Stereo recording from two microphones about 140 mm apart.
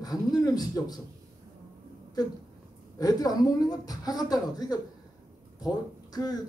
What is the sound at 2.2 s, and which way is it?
Speech, 30° left (ahead or behind).